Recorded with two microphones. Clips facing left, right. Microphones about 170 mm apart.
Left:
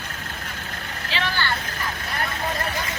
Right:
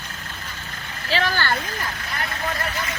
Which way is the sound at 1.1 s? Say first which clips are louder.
Right 4 dB; 40° right (ahead or behind).